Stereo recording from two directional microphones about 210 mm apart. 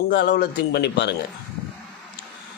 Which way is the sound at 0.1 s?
55° left (ahead or behind).